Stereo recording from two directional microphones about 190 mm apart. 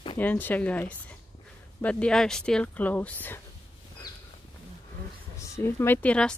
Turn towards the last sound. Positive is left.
turn(degrees=5)  # may be behind; listen again after turning